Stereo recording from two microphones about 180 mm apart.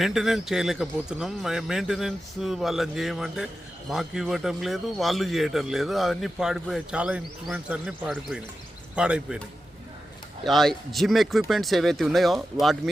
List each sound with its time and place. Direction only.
0.0 s speech: centre (ahead or behind)
10.4 s speech: centre (ahead or behind)